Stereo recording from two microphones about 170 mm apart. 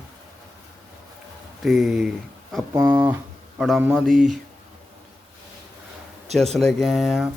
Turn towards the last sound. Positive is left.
turn(degrees=0)  # may be behind; listen again after turning